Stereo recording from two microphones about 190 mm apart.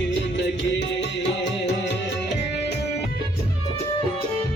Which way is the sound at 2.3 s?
60° left (ahead or behind).